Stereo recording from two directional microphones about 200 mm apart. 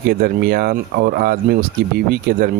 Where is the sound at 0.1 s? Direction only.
50° right (ahead or behind).